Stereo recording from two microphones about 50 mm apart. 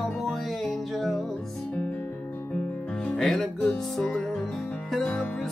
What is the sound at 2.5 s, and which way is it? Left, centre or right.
Music, centre.